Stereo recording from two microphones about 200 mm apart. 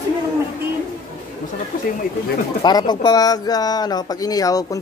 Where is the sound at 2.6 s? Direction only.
20° left (ahead or behind).